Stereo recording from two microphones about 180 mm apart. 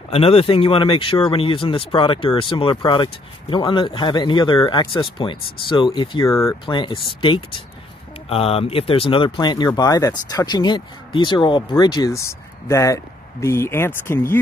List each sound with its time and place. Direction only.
0.1 s speech: 30° left (ahead or behind); by 14.4 s 15° left (ahead or behind)